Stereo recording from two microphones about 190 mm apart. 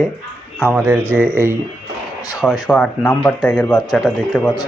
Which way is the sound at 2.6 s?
5° left (ahead or behind).